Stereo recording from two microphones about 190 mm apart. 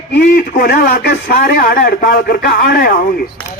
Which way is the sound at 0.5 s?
50° left (ahead or behind).